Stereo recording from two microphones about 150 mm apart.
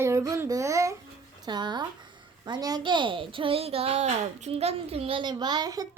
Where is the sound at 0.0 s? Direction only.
20° right (ahead or behind).